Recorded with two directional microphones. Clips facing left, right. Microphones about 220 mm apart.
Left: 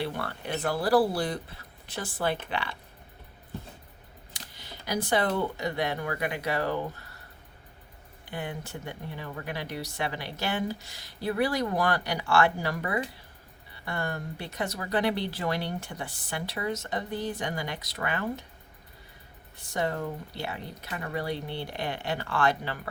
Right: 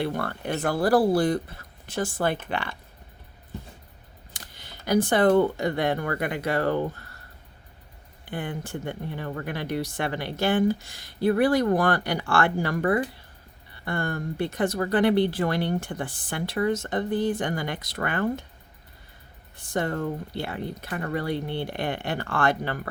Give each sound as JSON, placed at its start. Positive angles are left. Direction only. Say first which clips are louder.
{"t": 0.0, "sound": "speech", "louder": "right 5 dB", "side_deg": -50}
{"t": 4.4, "sound": "speech", "louder": "left 1 dB", "side_deg": -50}
{"t": 8.2, "sound": "speech", "louder": "right 4 dB", "side_deg": -55}
{"t": 19.5, "sound": "speech", "louder": "right 3 dB", "side_deg": -50}